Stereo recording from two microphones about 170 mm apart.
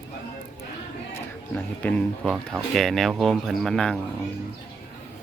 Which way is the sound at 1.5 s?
10° left (ahead or behind).